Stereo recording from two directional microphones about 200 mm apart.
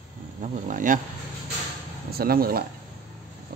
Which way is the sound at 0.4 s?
40° right (ahead or behind).